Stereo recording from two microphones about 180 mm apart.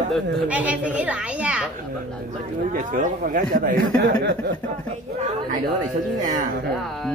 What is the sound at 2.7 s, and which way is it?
A man's voice, 50° right (ahead or behind).